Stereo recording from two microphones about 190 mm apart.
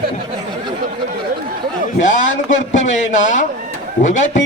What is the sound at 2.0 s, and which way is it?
A man's voice, 40° left (ahead or behind).